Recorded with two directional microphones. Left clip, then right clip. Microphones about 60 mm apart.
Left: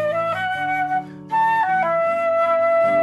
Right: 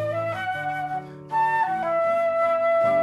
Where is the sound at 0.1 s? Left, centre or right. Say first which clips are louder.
Left 5 dB; left.